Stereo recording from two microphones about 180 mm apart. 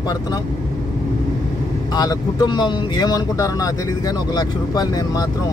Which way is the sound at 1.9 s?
20° left (ahead or behind).